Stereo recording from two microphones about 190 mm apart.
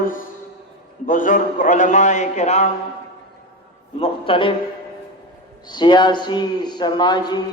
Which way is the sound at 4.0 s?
30° left (ahead or behind).